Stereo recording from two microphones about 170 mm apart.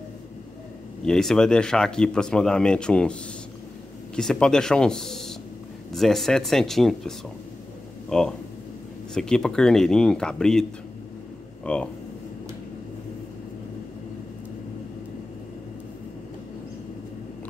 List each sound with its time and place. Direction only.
1.0 s speech: 5° left (ahead or behind)